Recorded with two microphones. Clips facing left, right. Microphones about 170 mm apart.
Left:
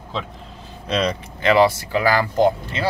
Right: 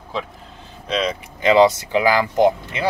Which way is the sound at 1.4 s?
20° right (ahead or behind).